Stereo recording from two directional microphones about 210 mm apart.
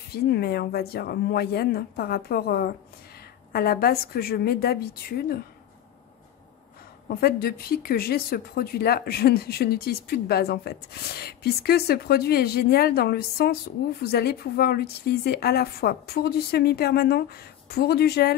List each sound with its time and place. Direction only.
0.1 s speech: 50° left (ahead or behind)
7.1 s speech: 45° left (ahead or behind)